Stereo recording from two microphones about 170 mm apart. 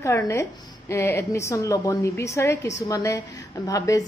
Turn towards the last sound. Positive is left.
turn(degrees=20)  # may be behind; listen again after turning